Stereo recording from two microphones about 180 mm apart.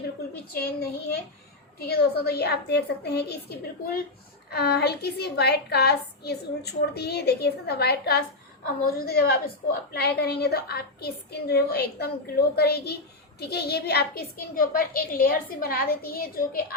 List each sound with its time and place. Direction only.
0.5 s a woman's voice: 60° left (ahead or behind)
4.4 s a woman's voice: 65° left (ahead or behind)